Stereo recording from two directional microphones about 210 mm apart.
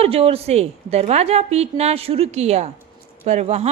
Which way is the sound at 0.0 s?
30° right (ahead or behind).